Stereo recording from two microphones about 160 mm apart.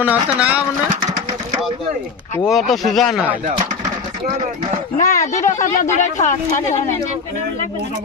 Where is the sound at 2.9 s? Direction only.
Centre (ahead or behind).